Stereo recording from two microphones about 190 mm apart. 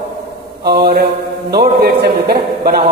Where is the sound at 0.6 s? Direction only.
55° right (ahead or behind).